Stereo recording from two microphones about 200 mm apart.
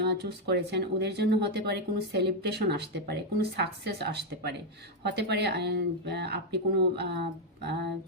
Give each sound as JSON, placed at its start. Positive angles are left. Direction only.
{"t": 0.4, "sound": "speech", "side_deg": -55}